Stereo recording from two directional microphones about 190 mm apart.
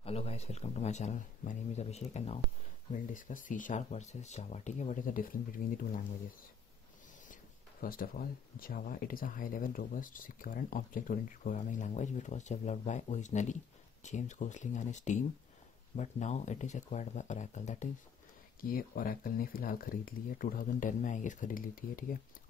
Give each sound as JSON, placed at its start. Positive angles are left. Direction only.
{"t": 0.0, "sound": "speech", "side_deg": 30}
{"t": 7.8, "sound": "speech", "side_deg": 50}